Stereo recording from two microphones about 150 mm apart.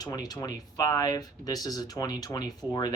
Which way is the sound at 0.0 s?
25° left (ahead or behind).